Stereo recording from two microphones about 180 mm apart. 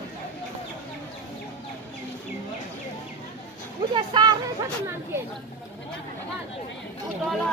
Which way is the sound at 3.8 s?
25° right (ahead or behind).